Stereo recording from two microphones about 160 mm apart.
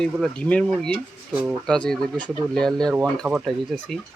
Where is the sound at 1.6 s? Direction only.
5° left (ahead or behind).